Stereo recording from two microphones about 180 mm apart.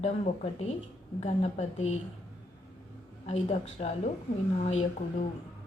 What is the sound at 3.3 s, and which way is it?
A woman's voice, 40° left (ahead or behind).